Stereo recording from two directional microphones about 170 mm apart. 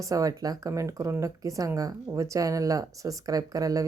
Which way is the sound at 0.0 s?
20° right (ahead or behind).